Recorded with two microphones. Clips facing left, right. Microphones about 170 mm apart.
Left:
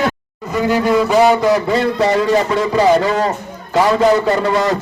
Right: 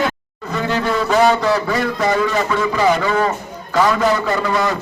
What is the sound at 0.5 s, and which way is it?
A man's voice, 10° left (ahead or behind).